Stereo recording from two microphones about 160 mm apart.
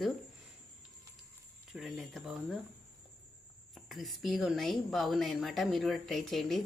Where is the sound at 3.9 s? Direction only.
Centre (ahead or behind).